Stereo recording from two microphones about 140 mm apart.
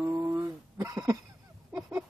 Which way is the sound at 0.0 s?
20° right (ahead or behind).